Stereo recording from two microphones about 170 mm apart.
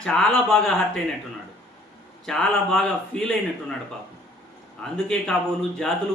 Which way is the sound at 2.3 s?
5° left (ahead or behind).